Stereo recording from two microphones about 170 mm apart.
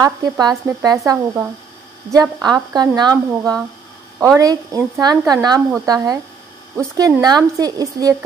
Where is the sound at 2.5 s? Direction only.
25° right (ahead or behind).